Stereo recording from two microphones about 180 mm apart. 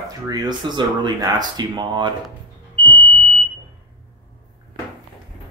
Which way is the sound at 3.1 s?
35° right (ahead or behind).